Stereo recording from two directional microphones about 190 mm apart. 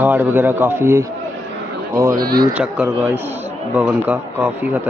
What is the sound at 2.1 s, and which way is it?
Speech, 50° right (ahead or behind).